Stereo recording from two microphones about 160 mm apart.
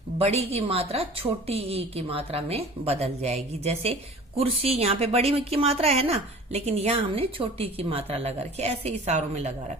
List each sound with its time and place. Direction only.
0.2 s a woman's voice: 40° right (ahead or behind)